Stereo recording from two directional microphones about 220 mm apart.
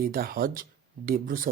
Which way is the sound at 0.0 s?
40° right (ahead or behind).